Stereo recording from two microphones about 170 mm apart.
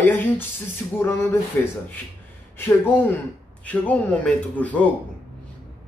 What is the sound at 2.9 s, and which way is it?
Speech, 10° left (ahead or behind).